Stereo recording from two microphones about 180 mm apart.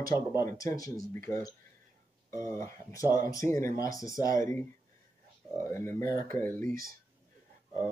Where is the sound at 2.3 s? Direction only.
15° left (ahead or behind).